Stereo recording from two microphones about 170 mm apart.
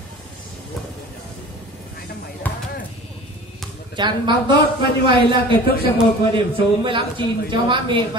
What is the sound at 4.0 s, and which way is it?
Speech, 25° right (ahead or behind).